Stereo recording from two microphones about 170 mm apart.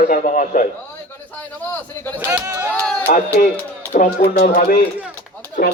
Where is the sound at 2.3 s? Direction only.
15° right (ahead or behind).